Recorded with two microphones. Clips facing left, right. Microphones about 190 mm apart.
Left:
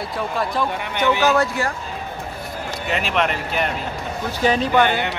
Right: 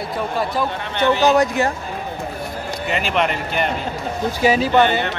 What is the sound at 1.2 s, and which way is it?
Speech, 15° right (ahead or behind).